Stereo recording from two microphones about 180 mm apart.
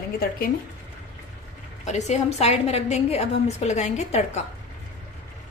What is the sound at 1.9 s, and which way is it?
A woman's voice, 40° left (ahead or behind).